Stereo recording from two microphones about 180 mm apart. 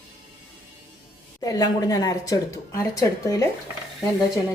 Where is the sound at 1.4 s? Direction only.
20° left (ahead or behind).